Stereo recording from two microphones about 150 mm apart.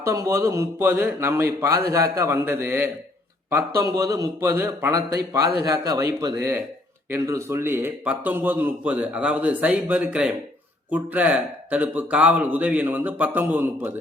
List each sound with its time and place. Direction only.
0.0 s a man's voice: 20° right (ahead or behind)